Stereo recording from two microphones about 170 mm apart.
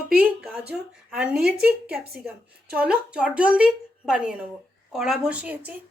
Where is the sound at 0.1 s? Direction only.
5° right (ahead or behind).